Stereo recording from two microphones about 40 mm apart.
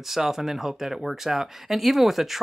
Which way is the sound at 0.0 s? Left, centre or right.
Centre.